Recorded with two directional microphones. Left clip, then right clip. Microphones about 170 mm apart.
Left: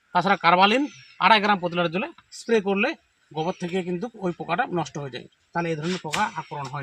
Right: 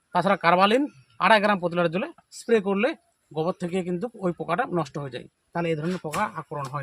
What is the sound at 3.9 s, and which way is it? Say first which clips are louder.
Speech: even; 25° right (ahead or behind).